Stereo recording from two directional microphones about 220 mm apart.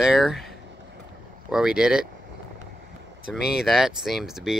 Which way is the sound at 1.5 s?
5° right (ahead or behind).